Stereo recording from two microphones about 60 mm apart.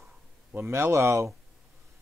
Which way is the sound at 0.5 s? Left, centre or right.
Right.